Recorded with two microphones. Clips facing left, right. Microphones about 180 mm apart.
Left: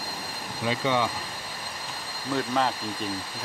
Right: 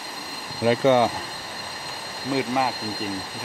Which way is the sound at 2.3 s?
10° right (ahead or behind).